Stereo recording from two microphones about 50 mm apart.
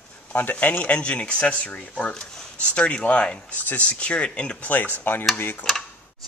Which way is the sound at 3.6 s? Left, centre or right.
Left.